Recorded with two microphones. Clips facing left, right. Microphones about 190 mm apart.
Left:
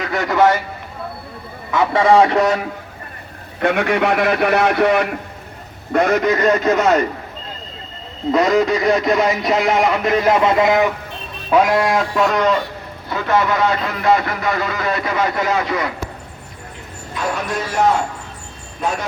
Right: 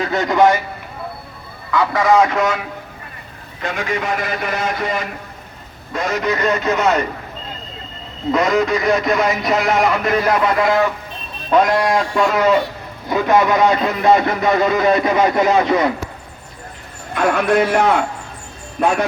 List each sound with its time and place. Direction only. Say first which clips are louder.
0.0 s speech: right 1 dB; 20° right (ahead or behind)
1.7 s speech: left 1 dB; 25° left (ahead or behind)
3.6 s speech: left 6 dB; 60° left (ahead or behind)
8.3 s speech: left 1 dB; 35° left (ahead or behind); by 10.8 s 20° left (ahead or behind)
11.5 s a man's voice: even; 5° left (ahead or behind); by 15.9 s 20° right (ahead or behind)
17.2 s a man's voice: right 8 dB; 60° right (ahead or behind)